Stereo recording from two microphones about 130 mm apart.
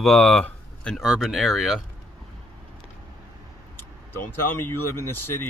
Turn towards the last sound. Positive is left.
turn(degrees=15)  # may be behind; listen again after turning